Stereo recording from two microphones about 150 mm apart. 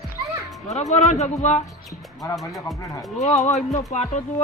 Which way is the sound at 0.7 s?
50° left (ahead or behind).